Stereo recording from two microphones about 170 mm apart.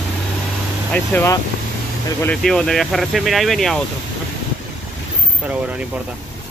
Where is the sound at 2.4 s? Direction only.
5° left (ahead or behind).